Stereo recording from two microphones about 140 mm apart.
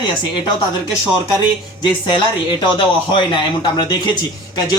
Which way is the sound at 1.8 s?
35° left (ahead or behind).